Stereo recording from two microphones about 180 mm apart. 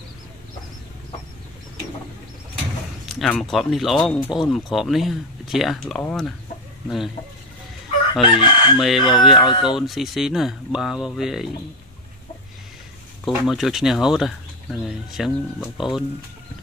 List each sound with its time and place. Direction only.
3.1 s speech: centre (ahead or behind)
8.1 s chicken: 25° left (ahead or behind)
8.7 s speech: centre (ahead or behind)
9.4 s chicken: 25° left (ahead or behind)
9.8 s speech: centre (ahead or behind)
13.2 s speech: centre (ahead or behind)